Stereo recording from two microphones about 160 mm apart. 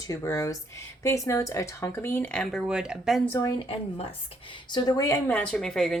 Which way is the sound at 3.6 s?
35° left (ahead or behind).